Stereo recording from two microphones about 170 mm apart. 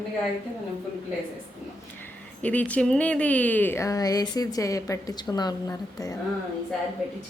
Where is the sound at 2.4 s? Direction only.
10° left (ahead or behind).